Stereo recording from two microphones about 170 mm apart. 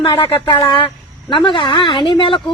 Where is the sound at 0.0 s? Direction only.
30° left (ahead or behind).